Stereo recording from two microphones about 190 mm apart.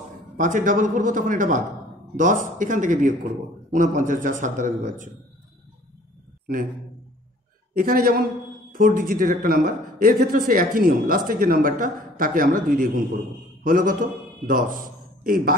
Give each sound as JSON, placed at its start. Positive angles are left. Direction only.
{"t": 0.4, "sound": "a man's voice", "side_deg": -45}
{"t": 7.7, "sound": "a man's voice", "side_deg": -50}